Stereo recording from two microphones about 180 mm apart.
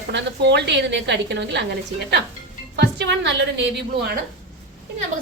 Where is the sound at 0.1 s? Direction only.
75° right (ahead or behind).